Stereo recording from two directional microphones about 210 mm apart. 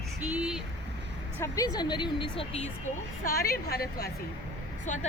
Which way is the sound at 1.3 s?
15° left (ahead or behind).